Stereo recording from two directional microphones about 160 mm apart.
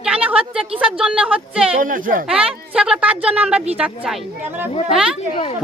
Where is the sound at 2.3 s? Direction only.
5° right (ahead or behind).